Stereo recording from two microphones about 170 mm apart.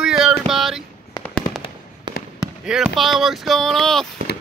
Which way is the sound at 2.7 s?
5° right (ahead or behind).